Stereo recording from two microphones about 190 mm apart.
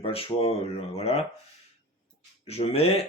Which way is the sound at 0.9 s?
35° left (ahead or behind).